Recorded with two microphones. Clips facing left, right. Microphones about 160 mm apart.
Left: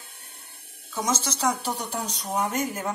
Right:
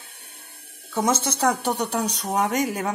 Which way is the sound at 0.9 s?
60° right (ahead or behind).